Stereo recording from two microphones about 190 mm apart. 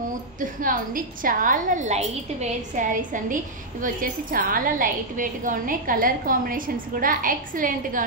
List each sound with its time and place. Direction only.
0.6 s a woman's voice: 45° right (ahead or behind)